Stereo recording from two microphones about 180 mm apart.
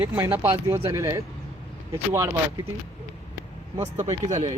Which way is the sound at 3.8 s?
40° right (ahead or behind).